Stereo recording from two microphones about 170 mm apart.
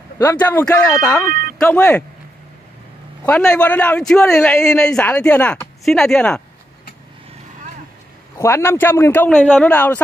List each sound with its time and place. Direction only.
0.2 s a man's voice: 10° left (ahead or behind)
3.3 s a man's voice: 5° left (ahead or behind)
8.4 s a man's voice: 15° left (ahead or behind)